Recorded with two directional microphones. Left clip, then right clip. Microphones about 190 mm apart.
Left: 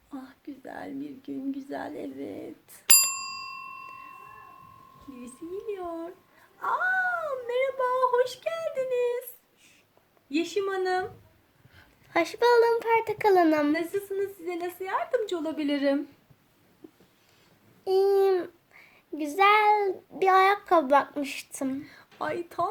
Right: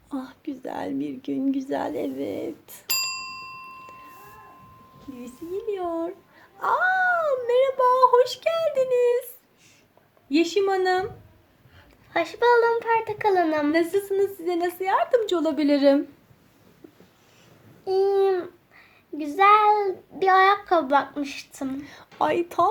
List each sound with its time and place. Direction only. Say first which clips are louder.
0.1 s speech: right 9 dB; 25° right (ahead or behind)
5.7 s speech: right 7 dB; 20° right (ahead or behind)
10.2 s speech: right 7 dB; 25° right (ahead or behind)
12.1 s a child's voice: right 2 dB; 45° left (ahead or behind)
13.7 s speech: right 7 dB; 25° right (ahead or behind)
17.8 s a child's voice: right 1 dB; 50° left (ahead or behind)
21.8 s speech: right 9 dB; 25° right (ahead or behind)